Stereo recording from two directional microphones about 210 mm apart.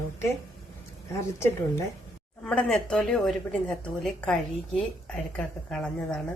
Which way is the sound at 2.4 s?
Centre (ahead or behind).